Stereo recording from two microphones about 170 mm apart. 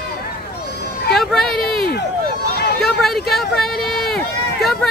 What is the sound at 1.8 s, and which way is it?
Run, 70° left (ahead or behind).